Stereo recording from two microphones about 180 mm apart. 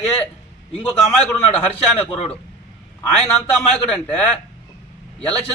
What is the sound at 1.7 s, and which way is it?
Speech, 35° left (ahead or behind).